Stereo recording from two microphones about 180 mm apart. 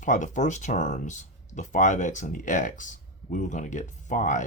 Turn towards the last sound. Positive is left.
turn(degrees=45)  # may be behind; listen again after turning